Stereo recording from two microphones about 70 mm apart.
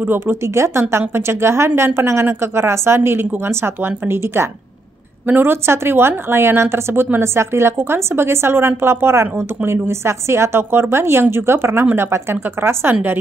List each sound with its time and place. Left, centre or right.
0.0 s a woman's voice: right